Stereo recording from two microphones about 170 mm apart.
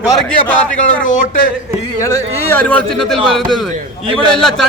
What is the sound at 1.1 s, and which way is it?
Speech, 50° left (ahead or behind).